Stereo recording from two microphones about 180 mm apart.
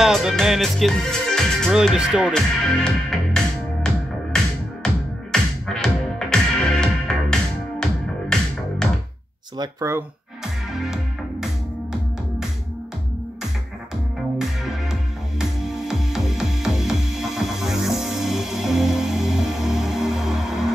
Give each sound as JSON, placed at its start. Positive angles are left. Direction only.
{"t": 0.0, "sound": "speech", "side_deg": 0}
{"t": 4.8, "sound": "music", "side_deg": 5}
{"t": 9.6, "sound": "speech", "side_deg": -15}
{"t": 10.4, "sound": "music", "side_deg": 0}
{"t": 14.6, "sound": "music", "side_deg": 0}